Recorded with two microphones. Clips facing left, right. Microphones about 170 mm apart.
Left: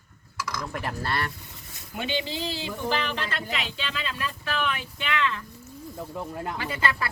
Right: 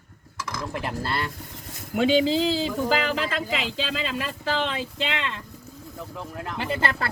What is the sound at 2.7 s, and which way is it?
Speech, 90° right.